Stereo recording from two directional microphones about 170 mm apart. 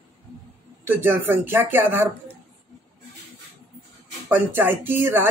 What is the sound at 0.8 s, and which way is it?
Speech, 10° right (ahead or behind).